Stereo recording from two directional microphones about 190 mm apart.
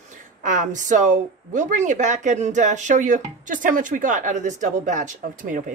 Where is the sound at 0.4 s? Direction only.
40° right (ahead or behind).